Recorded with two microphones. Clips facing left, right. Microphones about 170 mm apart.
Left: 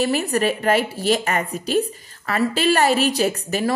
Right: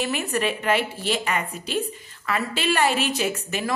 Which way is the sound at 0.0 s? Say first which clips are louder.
Left 5 dB; 40° left (ahead or behind).